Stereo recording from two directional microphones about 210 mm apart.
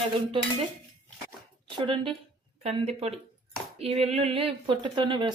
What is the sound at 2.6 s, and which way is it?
Speech, 25° right (ahead or behind).